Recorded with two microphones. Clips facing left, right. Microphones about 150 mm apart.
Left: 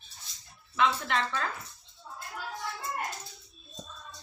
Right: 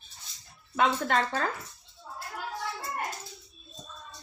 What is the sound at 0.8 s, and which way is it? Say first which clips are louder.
Speech: right 2 dB; 45° right (ahead or behind).